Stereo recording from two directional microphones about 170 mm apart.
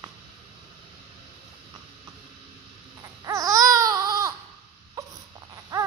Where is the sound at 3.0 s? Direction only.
20° right (ahead or behind).